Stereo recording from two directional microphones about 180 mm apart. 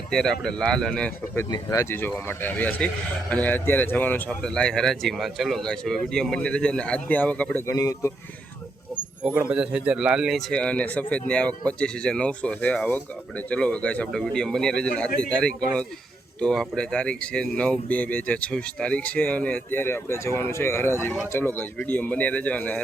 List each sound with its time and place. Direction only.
0.1 s a man's voice: 5° left (ahead or behind)
1.5 s speech: 20° left (ahead or behind)
9.2 s a man's voice: 10° right (ahead or behind); by 22.8 s 10° left (ahead or behind)